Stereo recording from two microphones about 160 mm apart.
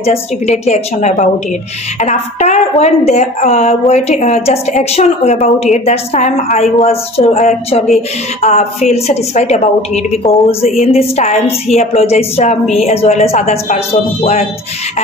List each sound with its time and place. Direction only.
0.0 s a woman's voice: 40° left (ahead or behind)